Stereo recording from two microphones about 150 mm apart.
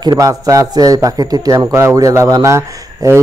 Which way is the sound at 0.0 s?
25° right (ahead or behind).